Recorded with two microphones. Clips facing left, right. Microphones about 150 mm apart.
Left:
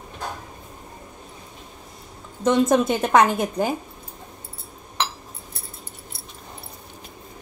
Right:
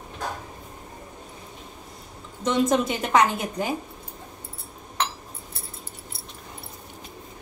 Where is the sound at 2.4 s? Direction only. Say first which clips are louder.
Left 4 dB; 50° left (ahead or behind).